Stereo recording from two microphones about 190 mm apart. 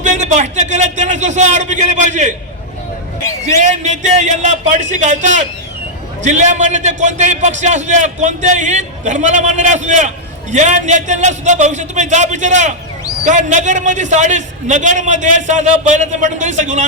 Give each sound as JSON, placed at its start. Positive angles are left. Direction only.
{"t": 0.0, "sound": "a man's voice", "side_deg": -40}
{"t": 3.6, "sound": "a man's voice", "side_deg": -40}